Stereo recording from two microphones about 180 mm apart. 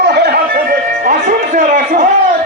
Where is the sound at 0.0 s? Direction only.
65° right (ahead or behind).